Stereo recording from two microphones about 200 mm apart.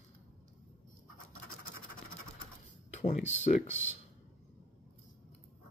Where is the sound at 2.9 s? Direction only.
35° left (ahead or behind).